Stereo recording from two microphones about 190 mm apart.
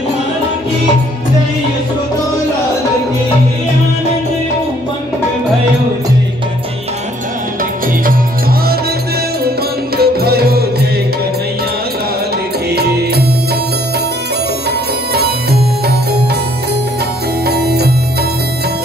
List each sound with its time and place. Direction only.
8.0 s music: 50° right (ahead or behind)
9.9 s music: 55° right (ahead or behind)
12.7 s music: 55° right (ahead or behind)
15.1 s music: 55° right (ahead or behind)
17.5 s music: 60° right (ahead or behind)